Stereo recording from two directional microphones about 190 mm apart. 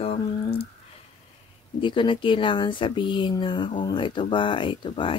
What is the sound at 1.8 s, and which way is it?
Speech, 25° left (ahead or behind).